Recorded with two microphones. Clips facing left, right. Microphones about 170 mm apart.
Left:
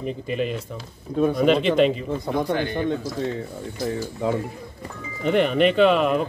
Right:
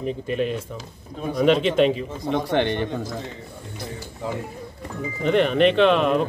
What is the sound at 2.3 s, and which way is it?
Speech, 70° right (ahead or behind).